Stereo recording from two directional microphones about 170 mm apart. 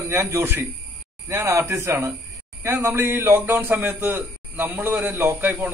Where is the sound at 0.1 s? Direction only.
15° right (ahead or behind).